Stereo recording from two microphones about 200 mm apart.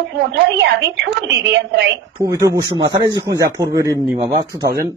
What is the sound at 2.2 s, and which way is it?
Speech, 15° right (ahead or behind).